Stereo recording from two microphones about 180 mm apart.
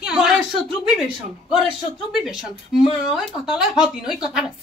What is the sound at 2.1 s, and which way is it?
A woman's voice, centre (ahead or behind).